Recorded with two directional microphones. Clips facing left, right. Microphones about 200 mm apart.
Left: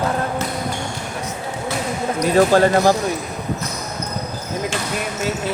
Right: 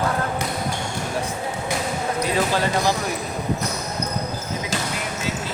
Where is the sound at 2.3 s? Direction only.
45° left (ahead or behind).